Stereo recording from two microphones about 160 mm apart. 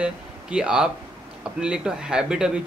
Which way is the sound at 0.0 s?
5° right (ahead or behind).